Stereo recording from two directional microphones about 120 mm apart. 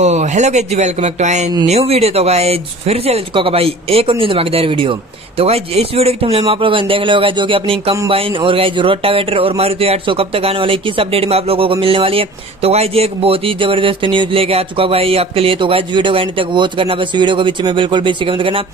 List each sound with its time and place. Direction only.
0.0 s speech: 70° right (ahead or behind)
1.7 s speech: 60° right (ahead or behind)